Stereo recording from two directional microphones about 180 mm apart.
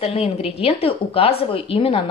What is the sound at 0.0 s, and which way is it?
A woman's voice, 35° left (ahead or behind).